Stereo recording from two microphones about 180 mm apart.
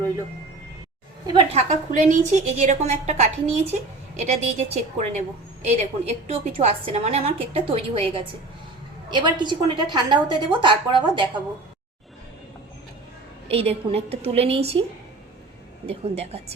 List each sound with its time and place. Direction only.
1.5 s a woman's voice: 45° right (ahead or behind); by 11.3 s 25° right (ahead or behind)
13.5 s a woman's voice: 35° right (ahead or behind)
15.9 s a woman's voice: 35° right (ahead or behind)